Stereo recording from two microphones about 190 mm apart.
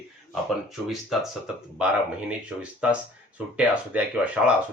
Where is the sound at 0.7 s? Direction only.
Centre (ahead or behind).